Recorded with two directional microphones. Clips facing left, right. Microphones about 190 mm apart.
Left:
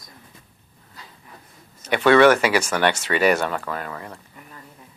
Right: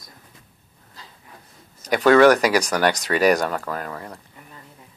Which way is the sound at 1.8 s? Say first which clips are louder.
Right 1 dB; 40° right (ahead or behind).